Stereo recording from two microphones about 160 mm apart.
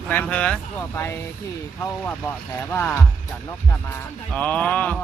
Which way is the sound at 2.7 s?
15° left (ahead or behind).